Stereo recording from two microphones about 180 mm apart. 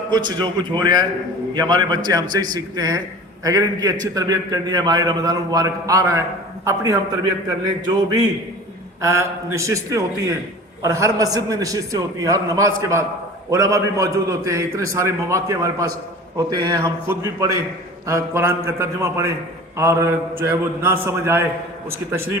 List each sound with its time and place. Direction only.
0.1 s a man's voice: 25° right (ahead or behind)